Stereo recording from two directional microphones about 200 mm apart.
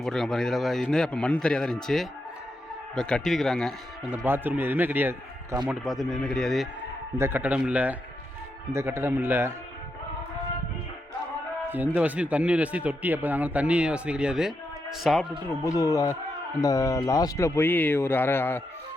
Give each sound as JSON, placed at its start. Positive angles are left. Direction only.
{"t": 0.0, "sound": "a man's voice", "side_deg": 0}
{"t": 4.3, "sound": "a man's voice", "side_deg": -10}
{"t": 7.2, "sound": "speech", "side_deg": -10}
{"t": 11.7, "sound": "a man's voice", "side_deg": -10}
{"t": 15.6, "sound": "speech", "side_deg": 15}